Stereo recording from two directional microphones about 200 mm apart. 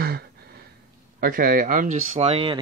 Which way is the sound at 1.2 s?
45° right (ahead or behind).